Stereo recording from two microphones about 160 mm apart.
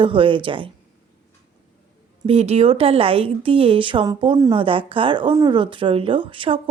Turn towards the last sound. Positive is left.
turn(degrees=-35)  # may be behind; listen again after turning